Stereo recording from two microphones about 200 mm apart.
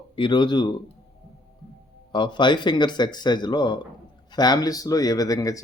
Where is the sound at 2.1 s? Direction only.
25° left (ahead or behind).